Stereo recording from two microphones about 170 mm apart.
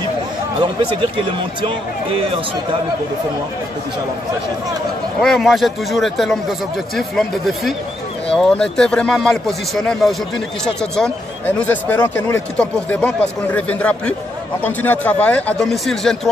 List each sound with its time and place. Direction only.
0.6 s speech: 30° right (ahead or behind)
5.2 s speech: centre (ahead or behind)